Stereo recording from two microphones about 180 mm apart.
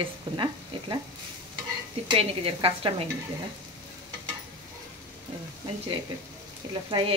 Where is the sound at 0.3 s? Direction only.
25° right (ahead or behind).